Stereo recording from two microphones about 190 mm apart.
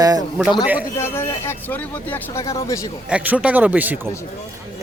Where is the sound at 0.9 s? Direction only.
15° left (ahead or behind).